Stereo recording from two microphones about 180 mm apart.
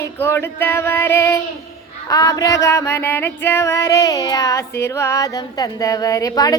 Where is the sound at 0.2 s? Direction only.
15° left (ahead or behind).